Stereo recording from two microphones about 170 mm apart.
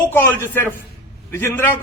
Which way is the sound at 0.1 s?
15° left (ahead or behind).